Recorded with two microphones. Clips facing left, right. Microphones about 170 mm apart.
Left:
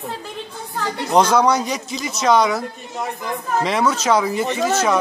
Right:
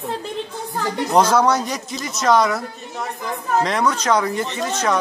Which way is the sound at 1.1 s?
5° right (ahead or behind).